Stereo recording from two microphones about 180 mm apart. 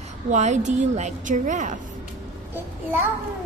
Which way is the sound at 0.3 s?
40° right (ahead or behind).